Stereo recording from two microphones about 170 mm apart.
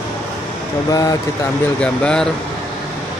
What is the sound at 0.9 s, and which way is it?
Speech, 20° left (ahead or behind).